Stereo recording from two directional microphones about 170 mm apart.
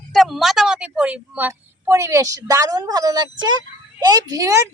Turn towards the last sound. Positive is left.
turn(degrees=-20)  # may be behind; listen again after turning